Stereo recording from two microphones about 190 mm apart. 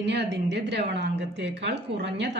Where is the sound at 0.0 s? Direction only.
65° right (ahead or behind).